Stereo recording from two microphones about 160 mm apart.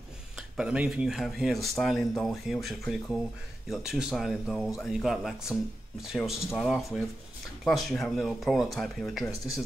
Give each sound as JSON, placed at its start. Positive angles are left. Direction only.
{"t": 0.4, "sound": "speech", "side_deg": -5}